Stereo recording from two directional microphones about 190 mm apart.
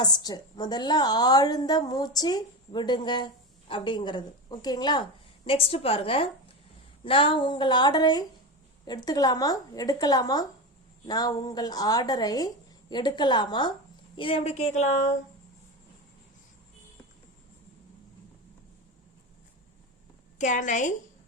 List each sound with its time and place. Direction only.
0.0 s a woman's voice: 20° left (ahead or behind); by 15.1 s 40° left (ahead or behind)
20.4 s speech: 40° left (ahead or behind)